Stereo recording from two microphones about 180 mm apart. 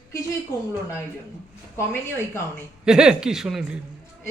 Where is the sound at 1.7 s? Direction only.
15° left (ahead or behind).